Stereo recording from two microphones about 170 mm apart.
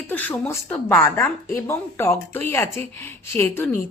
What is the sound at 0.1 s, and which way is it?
Speech, 10° left (ahead or behind).